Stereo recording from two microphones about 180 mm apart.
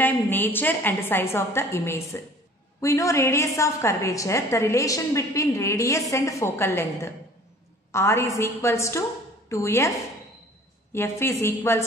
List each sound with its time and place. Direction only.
0.0 s a woman's voice: 10° left (ahead or behind)
10.9 s a woman's voice: 15° left (ahead or behind)